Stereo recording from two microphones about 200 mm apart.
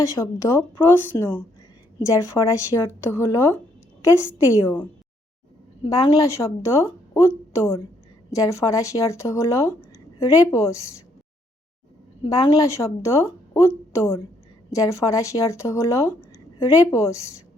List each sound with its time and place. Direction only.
0.2 s a woman's voice: 10° left (ahead or behind)
5.8 s a woman's voice: 20° left (ahead or behind)
12.2 s a woman's voice: 20° left (ahead or behind)